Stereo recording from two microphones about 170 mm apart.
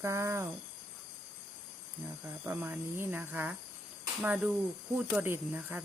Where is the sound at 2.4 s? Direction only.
10° right (ahead or behind).